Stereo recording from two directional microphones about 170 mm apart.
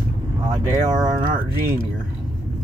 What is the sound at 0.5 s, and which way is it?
Speech, 25° right (ahead or behind).